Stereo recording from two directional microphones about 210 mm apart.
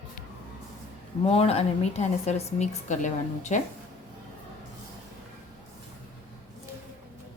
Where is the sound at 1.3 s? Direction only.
30° left (ahead or behind).